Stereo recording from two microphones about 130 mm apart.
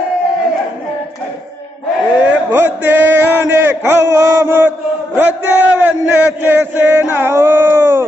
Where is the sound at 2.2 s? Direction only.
15° right (ahead or behind).